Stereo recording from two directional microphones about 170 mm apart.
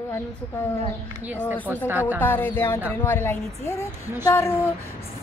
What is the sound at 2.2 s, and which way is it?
A woman's voice, 10° left (ahead or behind).